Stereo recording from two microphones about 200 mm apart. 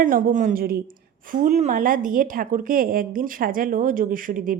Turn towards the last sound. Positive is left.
turn(degrees=-45)  # may be behind; listen again after turning